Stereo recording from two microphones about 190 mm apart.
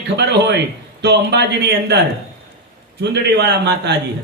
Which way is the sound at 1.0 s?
60° right (ahead or behind).